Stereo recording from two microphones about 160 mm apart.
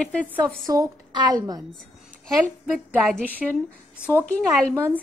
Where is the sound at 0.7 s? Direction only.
25° right (ahead or behind).